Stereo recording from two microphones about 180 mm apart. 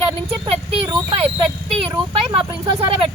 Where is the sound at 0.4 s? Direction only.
30° right (ahead or behind).